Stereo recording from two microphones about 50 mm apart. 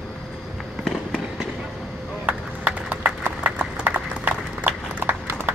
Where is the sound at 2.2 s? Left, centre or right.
Right.